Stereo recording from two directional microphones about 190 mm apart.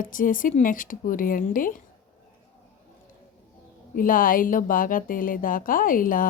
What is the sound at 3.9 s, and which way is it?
Speech, 45° left (ahead or behind).